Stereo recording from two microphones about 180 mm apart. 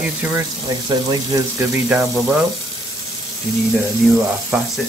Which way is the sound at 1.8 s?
5° right (ahead or behind).